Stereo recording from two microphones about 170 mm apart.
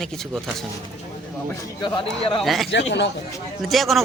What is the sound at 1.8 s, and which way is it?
Speech, 30° left (ahead or behind).